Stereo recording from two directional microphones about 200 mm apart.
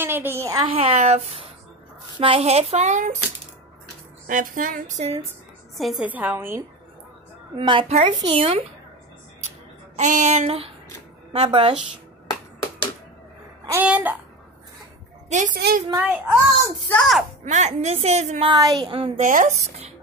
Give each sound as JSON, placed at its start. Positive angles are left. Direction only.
{"t": 0.0, "sound": "a woman's voice", "side_deg": -10}
{"t": 0.7, "sound": "a woman's voice", "side_deg": -30}
{"t": 4.3, "sound": "a woman's voice", "side_deg": -40}
{"t": 5.8, "sound": "a woman's voice", "side_deg": 0}
{"t": 7.5, "sound": "a woman's voice", "side_deg": -25}
{"t": 9.9, "sound": "a woman's voice", "side_deg": -35}
{"t": 13.7, "sound": "a sound", "side_deg": -10}
{"t": 15.2, "sound": "a child's voice", "side_deg": -35}
{"t": 15.5, "sound": "a woman's voice", "side_deg": -50}
{"t": 16.0, "sound": "a child's voice", "side_deg": -5}
{"t": 17.5, "sound": "a woman's voice", "side_deg": -35}
{"t": 18.5, "sound": "a woman's voice", "side_deg": -20}
{"t": 19.1, "sound": "a woman's voice", "side_deg": -40}